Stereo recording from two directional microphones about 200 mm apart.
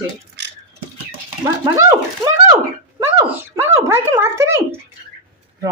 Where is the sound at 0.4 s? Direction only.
60° right (ahead or behind).